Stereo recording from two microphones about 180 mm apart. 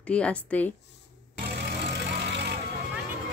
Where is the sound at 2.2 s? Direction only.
75° right (ahead or behind).